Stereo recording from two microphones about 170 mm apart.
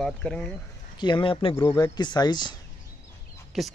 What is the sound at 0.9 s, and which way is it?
Speech, 25° left (ahead or behind).